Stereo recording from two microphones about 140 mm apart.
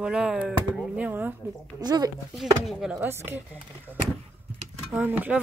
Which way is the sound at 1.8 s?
30° right (ahead or behind).